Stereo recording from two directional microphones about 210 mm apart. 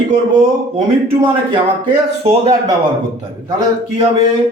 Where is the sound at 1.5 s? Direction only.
25° right (ahead or behind).